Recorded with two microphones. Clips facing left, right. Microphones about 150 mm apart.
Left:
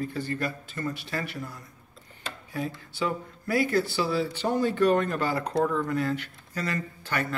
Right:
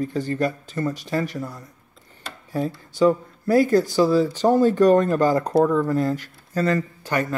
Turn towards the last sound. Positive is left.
turn(degrees=-40)  # may be behind; listen again after turning